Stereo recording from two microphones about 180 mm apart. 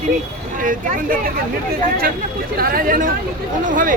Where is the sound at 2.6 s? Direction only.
55° right (ahead or behind).